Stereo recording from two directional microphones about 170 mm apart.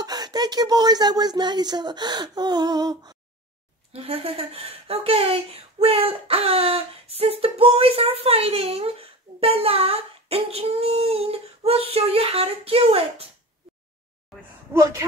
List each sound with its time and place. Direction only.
0.0 s speech: 25° right (ahead or behind)
3.9 s speech: 35° right (ahead or behind)
14.7 s speech: 15° right (ahead or behind)